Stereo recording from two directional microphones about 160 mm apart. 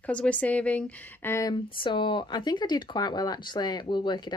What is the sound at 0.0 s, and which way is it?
A woman's voice, 10° left (ahead or behind).